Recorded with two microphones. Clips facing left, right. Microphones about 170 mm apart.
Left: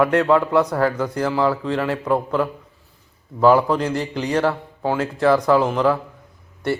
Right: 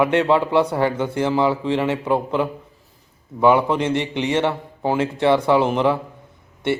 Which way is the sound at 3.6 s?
20° right (ahead or behind).